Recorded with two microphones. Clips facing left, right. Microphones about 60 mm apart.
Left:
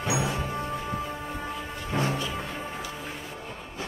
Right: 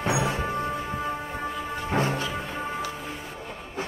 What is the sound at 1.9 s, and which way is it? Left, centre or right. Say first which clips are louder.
Music: right 2 dB; right.